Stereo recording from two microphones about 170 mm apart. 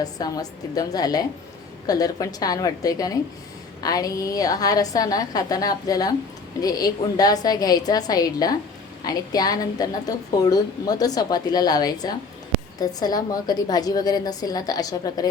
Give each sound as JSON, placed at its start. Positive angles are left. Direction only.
{"t": 0.0, "sound": "a woman's voice", "side_deg": 20}